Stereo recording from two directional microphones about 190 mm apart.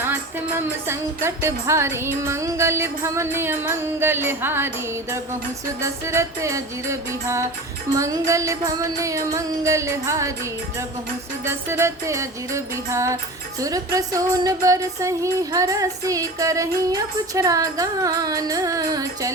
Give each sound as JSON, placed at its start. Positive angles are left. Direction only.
{"t": 0.0, "sound": "music", "side_deg": -10}
{"t": 5.8, "sound": "music", "side_deg": -15}
{"t": 11.4, "sound": "music", "side_deg": -15}